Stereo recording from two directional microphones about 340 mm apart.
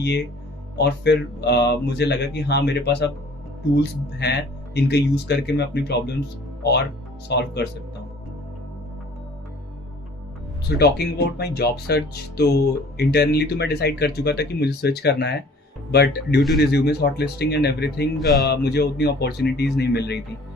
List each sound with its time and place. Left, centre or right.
0.8 s speech: left
10.8 s speech: left